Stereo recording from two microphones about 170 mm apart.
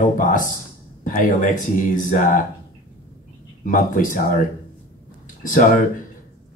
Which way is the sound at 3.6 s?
50° left (ahead or behind).